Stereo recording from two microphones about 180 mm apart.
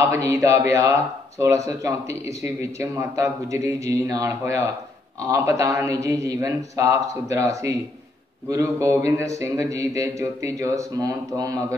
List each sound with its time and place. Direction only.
0.1 s speech: 15° right (ahead or behind)